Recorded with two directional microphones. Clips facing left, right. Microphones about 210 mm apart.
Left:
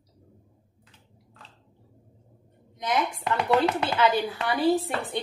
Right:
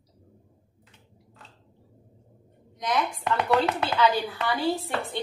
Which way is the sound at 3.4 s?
Centre (ahead or behind).